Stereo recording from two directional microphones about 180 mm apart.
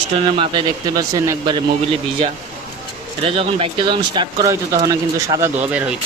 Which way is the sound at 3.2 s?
30° right (ahead or behind).